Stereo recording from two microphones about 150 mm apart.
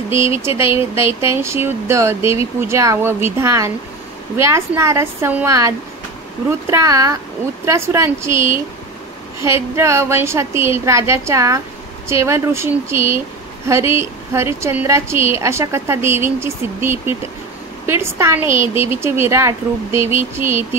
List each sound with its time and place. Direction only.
0.6 s a woman's voice: 15° right (ahead or behind)